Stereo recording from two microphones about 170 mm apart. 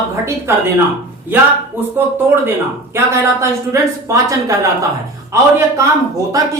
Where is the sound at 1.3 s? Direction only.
10° right (ahead or behind).